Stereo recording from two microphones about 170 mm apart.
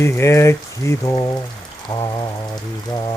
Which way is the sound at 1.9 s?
20° left (ahead or behind).